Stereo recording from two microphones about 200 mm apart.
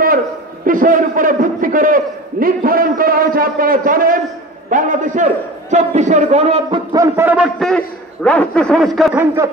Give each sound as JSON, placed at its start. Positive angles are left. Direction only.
{"t": 0.7, "sound": "a man's voice", "side_deg": -45}
{"t": 9.2, "sound": "a man's voice", "side_deg": -10}